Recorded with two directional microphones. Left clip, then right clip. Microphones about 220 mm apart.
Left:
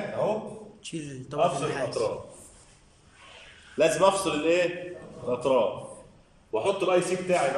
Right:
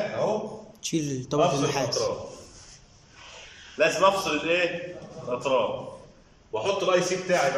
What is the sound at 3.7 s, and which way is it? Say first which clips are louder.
A man's voice: even; 25° left (ahead or behind).